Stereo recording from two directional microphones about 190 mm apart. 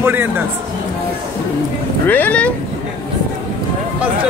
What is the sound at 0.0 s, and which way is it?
Speech, 10° right (ahead or behind).